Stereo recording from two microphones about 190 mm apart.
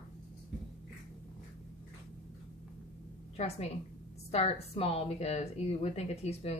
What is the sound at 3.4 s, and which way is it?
A woman's voice, 35° left (ahead or behind).